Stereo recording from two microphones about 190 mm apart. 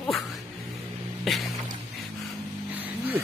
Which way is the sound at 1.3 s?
Centre (ahead or behind).